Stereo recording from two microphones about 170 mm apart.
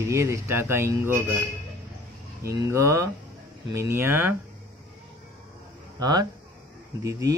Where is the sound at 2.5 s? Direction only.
15° right (ahead or behind).